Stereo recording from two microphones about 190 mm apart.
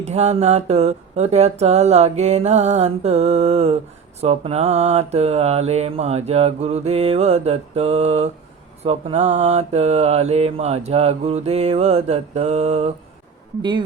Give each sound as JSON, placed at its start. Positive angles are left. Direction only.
{"t": 0.0, "sound": "mantra", "side_deg": -35}
{"t": 13.6, "sound": "speech", "side_deg": -25}